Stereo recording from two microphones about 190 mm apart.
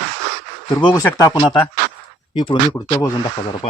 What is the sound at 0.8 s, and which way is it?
Speech, 25° left (ahead or behind).